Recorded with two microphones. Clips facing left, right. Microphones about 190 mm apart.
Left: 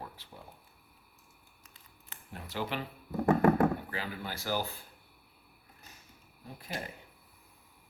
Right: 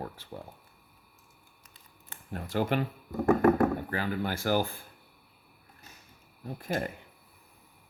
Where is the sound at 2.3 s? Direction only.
50° right (ahead or behind).